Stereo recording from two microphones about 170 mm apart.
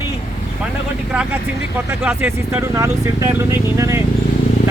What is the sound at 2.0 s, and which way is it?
Speech, 10° right (ahead or behind).